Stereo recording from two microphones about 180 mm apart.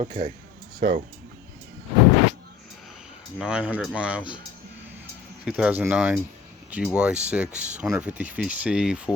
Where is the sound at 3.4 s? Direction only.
10° right (ahead or behind).